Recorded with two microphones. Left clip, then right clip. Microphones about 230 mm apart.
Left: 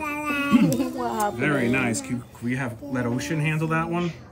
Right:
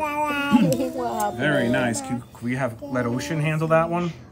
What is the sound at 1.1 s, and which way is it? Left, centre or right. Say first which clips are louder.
Speech: right 1 dB; left.